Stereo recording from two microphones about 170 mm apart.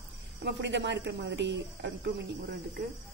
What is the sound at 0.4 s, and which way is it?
Speech, 85° right.